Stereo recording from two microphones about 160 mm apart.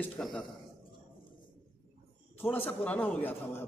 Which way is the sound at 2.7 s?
10° left (ahead or behind).